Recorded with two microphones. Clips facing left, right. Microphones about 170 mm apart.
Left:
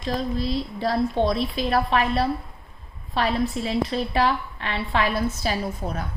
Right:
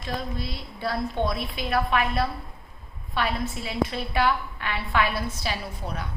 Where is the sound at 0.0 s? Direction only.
35° left (ahead or behind).